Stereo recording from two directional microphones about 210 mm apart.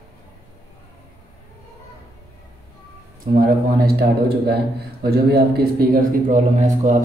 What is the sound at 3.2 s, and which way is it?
A man's voice, 40° right (ahead or behind).